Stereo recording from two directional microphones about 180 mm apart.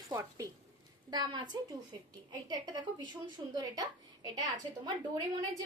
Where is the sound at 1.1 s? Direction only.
25° right (ahead or behind).